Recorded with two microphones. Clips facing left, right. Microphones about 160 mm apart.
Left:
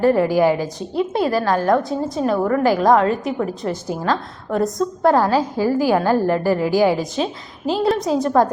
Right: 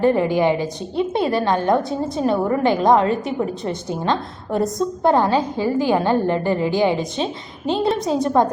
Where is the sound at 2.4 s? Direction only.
20° right (ahead or behind).